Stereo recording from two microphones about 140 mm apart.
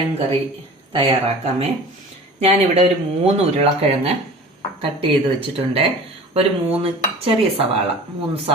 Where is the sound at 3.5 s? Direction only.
45° right (ahead or behind).